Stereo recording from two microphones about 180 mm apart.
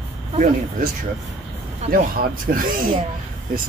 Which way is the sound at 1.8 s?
55° right (ahead or behind).